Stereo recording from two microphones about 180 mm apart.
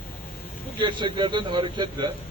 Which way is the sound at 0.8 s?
25° right (ahead or behind).